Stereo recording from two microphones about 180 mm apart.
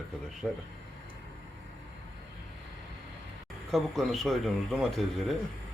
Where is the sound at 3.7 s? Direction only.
Centre (ahead or behind).